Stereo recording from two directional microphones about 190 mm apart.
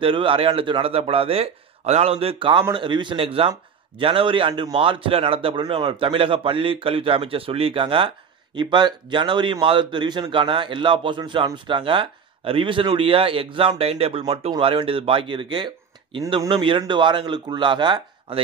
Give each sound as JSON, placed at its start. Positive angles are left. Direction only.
{"t": 0.0, "sound": "speech", "side_deg": -25}